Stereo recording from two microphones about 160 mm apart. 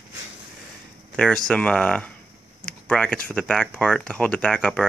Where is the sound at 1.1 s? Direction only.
5° left (ahead or behind).